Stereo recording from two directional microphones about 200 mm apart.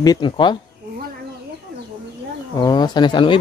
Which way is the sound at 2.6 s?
20° left (ahead or behind).